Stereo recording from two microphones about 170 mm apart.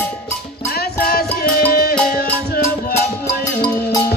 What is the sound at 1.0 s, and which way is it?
Music, 60° left (ahead or behind).